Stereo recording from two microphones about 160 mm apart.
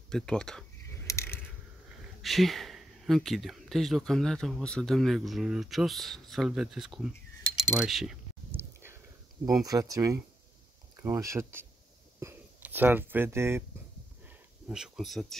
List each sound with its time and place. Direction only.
0.1 s speech: 5° left (ahead or behind)
1.0 s mechanisms: 15° left (ahead or behind)
2.2 s speech: centre (ahead or behind)
9.5 s speech: 20° right (ahead or behind)
14.2 s a sound: 5° right (ahead or behind)